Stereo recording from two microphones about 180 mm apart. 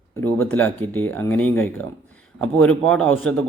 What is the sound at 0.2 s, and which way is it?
Speech, 10° left (ahead or behind).